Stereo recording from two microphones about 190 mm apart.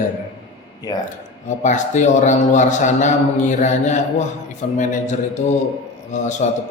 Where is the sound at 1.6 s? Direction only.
40° left (ahead or behind).